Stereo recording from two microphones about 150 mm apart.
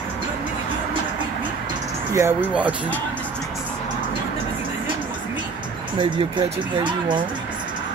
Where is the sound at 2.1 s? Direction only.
20° right (ahead or behind).